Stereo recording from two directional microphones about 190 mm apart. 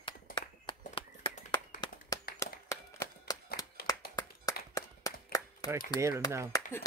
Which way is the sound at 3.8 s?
50° left (ahead or behind).